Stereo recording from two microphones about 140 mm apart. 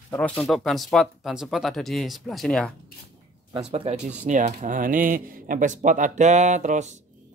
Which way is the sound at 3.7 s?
45° right (ahead or behind).